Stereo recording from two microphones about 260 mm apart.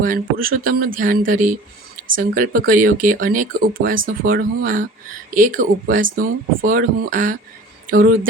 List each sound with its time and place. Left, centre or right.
0.0 s speech: right